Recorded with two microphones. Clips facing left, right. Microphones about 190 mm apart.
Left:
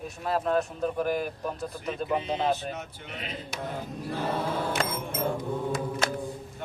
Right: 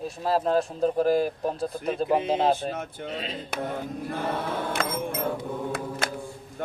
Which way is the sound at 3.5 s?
60° right (ahead or behind).